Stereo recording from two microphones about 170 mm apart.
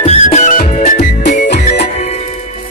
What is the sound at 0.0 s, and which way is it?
Music, 40° left (ahead or behind).